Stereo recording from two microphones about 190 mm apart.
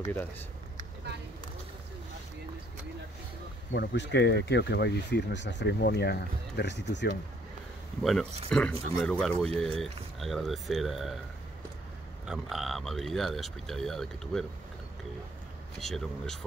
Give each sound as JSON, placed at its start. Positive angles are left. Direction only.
{"t": 3.7, "sound": "speech", "side_deg": 65}
{"t": 8.0, "sound": "speech", "side_deg": 0}
{"t": 12.3, "sound": "speech", "side_deg": 0}
{"t": 15.8, "sound": "speech", "side_deg": 0}